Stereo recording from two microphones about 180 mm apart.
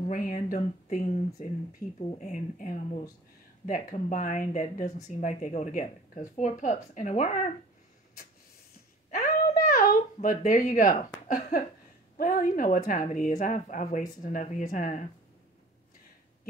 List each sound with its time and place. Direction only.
0.1 s speech: 50° left (ahead or behind)
9.1 s a sound: 50° left (ahead or behind)
10.7 s speech: 45° left (ahead or behind)